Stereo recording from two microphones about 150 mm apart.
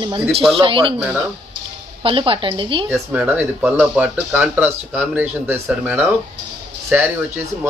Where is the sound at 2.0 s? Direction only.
35° right (ahead or behind).